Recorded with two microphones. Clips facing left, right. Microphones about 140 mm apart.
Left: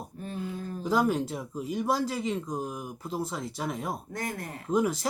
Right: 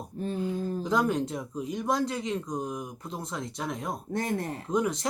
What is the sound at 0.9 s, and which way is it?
Speech, 5° left (ahead or behind).